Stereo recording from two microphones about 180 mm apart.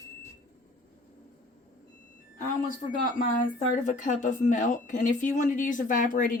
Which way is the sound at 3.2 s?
45° left (ahead or behind).